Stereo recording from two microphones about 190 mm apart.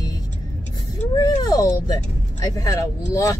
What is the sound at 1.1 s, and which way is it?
A child's voice, 20° left (ahead or behind).